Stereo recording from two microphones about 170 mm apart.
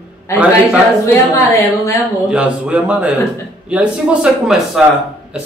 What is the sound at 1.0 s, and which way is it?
Speech, 15° left (ahead or behind).